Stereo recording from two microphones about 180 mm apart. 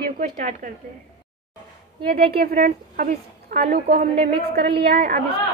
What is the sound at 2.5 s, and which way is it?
A woman's voice, 45° right (ahead or behind).